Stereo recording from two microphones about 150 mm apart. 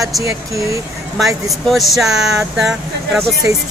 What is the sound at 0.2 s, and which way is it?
Speech, 20° right (ahead or behind).